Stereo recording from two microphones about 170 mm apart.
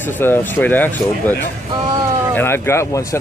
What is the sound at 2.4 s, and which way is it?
Speech, 15° left (ahead or behind).